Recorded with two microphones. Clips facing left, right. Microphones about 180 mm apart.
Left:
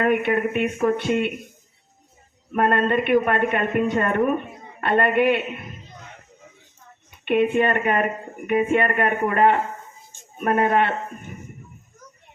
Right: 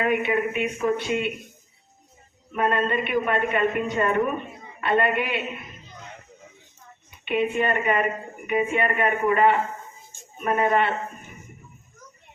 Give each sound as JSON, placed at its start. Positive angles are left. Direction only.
{"t": 0.0, "sound": "a woman's voice", "side_deg": 50}
{"t": 2.5, "sound": "a woman's voice", "side_deg": 55}
{"t": 7.5, "sound": "a woman's voice", "side_deg": 50}